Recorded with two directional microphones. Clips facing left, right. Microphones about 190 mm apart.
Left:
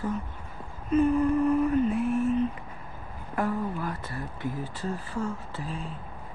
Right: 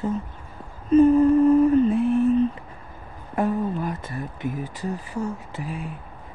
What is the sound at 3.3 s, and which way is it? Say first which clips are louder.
Speech: right 5 dB; 20° right (ahead or behind).